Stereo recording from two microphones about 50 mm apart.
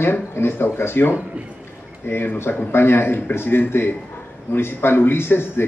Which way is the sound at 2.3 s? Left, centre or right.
Left.